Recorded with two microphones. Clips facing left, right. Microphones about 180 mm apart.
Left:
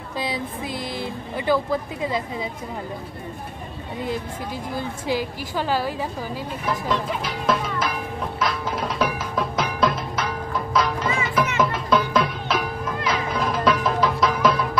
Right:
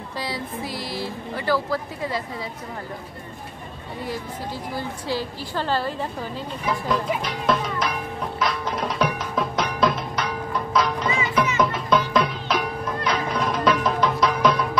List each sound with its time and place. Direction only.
0.2 s speech: 20° left (ahead or behind)
4.7 s a woman's voice: 15° left (ahead or behind)
6.6 s music: centre (ahead or behind)